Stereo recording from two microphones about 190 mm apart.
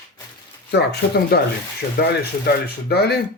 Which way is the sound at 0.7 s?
60° left (ahead or behind).